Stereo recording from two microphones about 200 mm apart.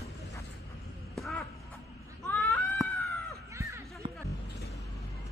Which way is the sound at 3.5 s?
15° right (ahead or behind).